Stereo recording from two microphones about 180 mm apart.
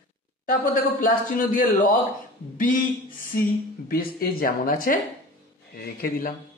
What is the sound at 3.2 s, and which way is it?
Speech, 50° left (ahead or behind).